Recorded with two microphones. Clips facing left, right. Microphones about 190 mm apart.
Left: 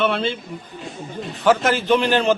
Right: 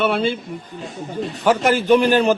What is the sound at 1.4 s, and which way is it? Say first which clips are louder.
Speech: right 1 dB; 15° right (ahead or behind).